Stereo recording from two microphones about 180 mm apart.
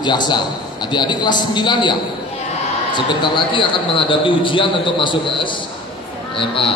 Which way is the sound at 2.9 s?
25° left (ahead or behind).